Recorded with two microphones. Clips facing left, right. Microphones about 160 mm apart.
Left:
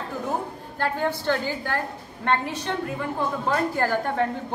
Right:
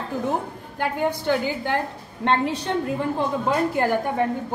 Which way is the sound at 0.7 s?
15° right (ahead or behind).